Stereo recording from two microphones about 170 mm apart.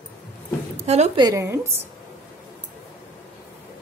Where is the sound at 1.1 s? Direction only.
20° right (ahead or behind).